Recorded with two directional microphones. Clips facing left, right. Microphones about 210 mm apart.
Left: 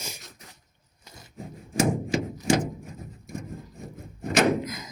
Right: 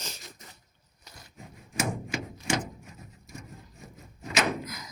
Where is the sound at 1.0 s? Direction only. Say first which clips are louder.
Left 7 dB; 25° left (ahead or behind).